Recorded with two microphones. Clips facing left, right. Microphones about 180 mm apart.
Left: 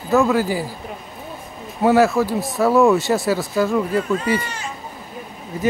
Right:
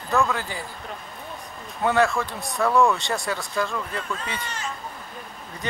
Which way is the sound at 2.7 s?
20° left (ahead or behind).